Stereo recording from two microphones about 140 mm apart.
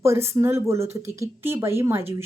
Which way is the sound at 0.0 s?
20° right (ahead or behind).